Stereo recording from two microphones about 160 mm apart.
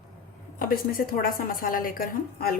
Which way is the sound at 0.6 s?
65° left (ahead or behind).